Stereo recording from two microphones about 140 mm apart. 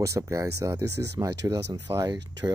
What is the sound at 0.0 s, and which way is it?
Speech, 20° right (ahead or behind).